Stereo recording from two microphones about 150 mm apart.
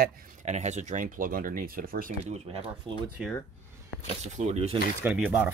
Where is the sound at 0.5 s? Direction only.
50° right (ahead or behind); by 2.1 s 70° right (ahead or behind).